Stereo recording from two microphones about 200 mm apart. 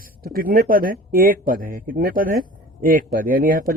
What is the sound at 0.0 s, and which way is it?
Speech, 45° right (ahead or behind).